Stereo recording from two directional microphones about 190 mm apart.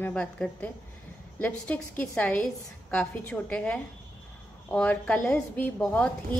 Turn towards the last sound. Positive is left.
turn(degrees=5)  # may be behind; listen again after turning